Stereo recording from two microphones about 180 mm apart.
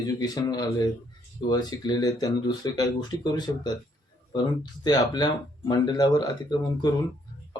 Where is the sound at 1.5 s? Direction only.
20° left (ahead or behind).